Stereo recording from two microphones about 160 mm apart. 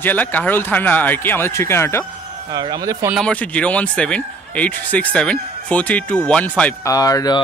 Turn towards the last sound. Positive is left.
turn(degrees=25)  # may be behind; listen again after turning